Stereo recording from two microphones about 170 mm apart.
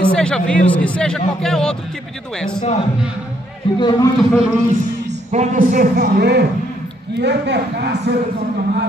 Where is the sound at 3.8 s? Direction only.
25° left (ahead or behind).